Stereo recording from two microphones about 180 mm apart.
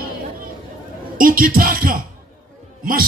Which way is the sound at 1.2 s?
50° right (ahead or behind).